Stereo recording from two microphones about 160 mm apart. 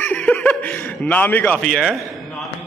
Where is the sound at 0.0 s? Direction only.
10° left (ahead or behind).